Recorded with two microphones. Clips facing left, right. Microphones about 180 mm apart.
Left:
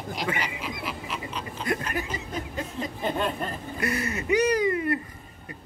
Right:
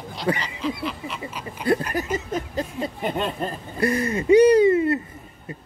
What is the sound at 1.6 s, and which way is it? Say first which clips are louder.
Speech: right 7 dB; 35° right (ahead or behind).